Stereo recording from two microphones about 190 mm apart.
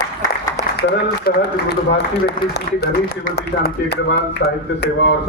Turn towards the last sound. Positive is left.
turn(degrees=60)  # may be behind; listen again after turning